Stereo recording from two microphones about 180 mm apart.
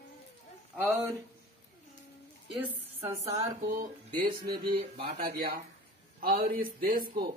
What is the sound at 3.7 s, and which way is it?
Speech, 55° right (ahead or behind).